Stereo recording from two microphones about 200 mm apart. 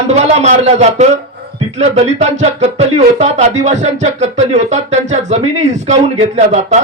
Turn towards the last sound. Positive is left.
turn(degrees=-35)  # may be behind; listen again after turning